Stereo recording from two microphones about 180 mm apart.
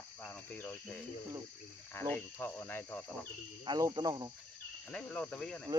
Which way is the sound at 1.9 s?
10° left (ahead or behind).